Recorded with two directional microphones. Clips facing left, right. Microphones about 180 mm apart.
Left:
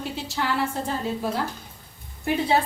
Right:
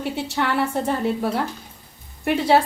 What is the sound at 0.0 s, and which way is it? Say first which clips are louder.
A woman's voice: right 5 dB; 65° right (ahead or behind).